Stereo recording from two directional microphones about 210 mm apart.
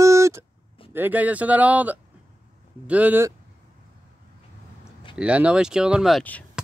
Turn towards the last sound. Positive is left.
turn(degrees=5)  # may be behind; listen again after turning